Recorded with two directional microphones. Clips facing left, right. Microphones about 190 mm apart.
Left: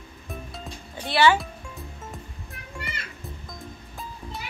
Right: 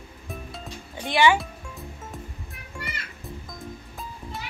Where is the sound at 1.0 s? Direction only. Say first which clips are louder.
Even; 15° right (ahead or behind).